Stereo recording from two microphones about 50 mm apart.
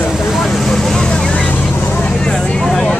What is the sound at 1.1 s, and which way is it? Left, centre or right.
Vehicle, left.